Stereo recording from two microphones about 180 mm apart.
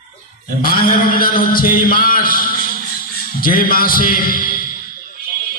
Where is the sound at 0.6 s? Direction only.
55° left (ahead or behind).